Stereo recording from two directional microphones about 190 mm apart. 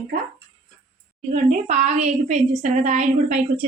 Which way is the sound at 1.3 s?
40° right (ahead or behind).